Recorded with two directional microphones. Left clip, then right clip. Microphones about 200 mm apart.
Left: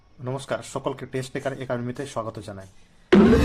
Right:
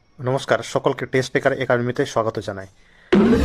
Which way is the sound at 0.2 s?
40° right (ahead or behind).